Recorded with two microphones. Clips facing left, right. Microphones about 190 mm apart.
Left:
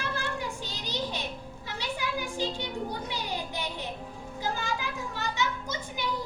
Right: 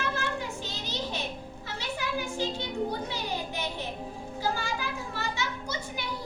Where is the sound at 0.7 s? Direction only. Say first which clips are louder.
Left 1 dB; 15° left (ahead or behind).